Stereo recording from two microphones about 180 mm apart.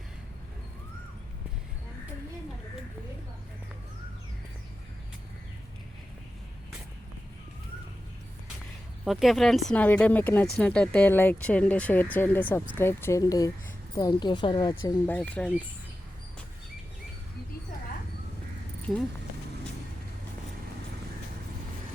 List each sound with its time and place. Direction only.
9.0 s a woman's voice: centre (ahead or behind); by 14.9 s 20° left (ahead or behind)
15.0 s speech: 10° left (ahead or behind)